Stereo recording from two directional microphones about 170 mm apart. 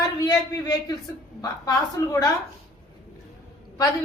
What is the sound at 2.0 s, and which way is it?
Speech, 15° left (ahead or behind).